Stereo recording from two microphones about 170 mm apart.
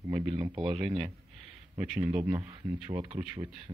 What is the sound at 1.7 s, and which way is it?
Speech, 10° right (ahead or behind).